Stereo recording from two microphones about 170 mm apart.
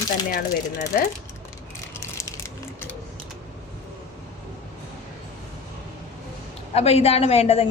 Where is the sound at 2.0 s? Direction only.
20° left (ahead or behind).